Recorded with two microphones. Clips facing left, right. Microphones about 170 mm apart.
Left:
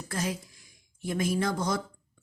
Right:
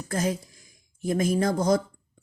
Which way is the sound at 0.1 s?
40° right (ahead or behind).